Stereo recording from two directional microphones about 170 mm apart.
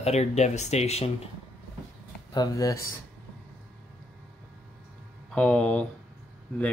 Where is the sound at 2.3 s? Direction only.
25° left (ahead or behind).